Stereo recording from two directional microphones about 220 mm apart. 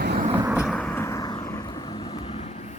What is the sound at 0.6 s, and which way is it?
Vehicle, centre (ahead or behind).